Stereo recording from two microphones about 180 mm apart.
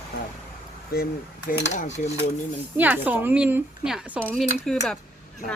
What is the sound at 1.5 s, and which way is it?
Cutlery, 50° left (ahead or behind).